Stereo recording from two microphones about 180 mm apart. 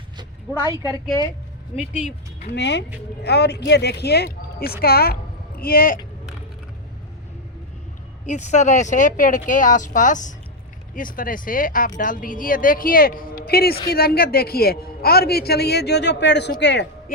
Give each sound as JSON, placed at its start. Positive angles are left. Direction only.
{"t": 1.7, "sound": "speech", "side_deg": 40}
{"t": 2.5, "sound": "speech", "side_deg": 75}
{"t": 8.3, "sound": "speech", "side_deg": 40}